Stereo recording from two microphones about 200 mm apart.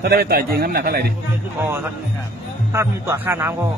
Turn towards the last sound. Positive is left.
turn(degrees=-10)  # may be behind; listen again after turning